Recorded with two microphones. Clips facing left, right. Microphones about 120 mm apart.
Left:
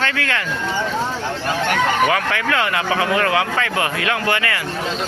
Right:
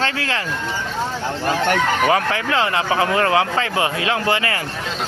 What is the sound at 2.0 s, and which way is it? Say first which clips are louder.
Speech: right 1 dB; 30° right (ahead or behind).